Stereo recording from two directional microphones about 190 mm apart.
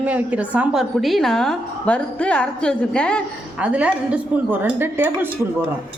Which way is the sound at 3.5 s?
5° right (ahead or behind).